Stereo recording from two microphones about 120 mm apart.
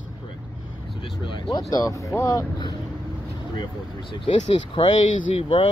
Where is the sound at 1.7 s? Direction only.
30° left (ahead or behind).